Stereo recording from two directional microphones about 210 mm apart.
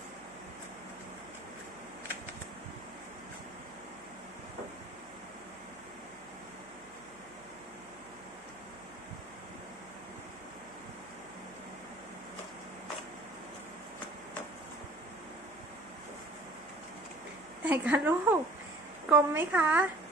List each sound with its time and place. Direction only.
17.7 s a woman's voice: 10° right (ahead or behind)